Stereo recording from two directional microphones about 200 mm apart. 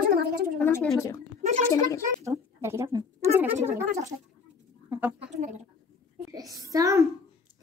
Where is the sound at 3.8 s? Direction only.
35° right (ahead or behind).